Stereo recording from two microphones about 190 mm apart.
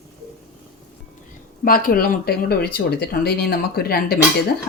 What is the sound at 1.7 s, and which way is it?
Speech, 50° left (ahead or behind).